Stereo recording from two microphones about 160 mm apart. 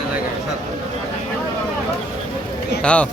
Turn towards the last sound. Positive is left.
turn(degrees=5)  # may be behind; listen again after turning